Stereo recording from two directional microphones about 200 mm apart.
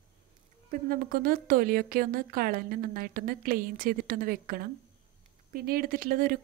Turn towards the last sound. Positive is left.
turn(degrees=-45)  # may be behind; listen again after turning